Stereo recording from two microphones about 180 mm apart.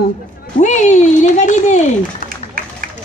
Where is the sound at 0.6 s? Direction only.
40° left (ahead or behind).